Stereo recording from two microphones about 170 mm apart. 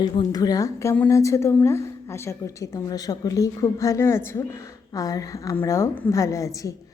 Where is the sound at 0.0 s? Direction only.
20° left (ahead or behind).